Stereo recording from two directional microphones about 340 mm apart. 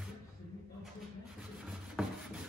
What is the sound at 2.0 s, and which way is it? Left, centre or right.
Rub, centre.